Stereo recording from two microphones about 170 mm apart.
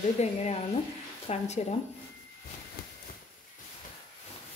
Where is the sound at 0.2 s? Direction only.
40° left (ahead or behind).